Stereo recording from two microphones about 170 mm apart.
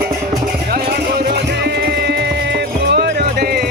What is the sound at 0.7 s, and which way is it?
Music, 70° right (ahead or behind).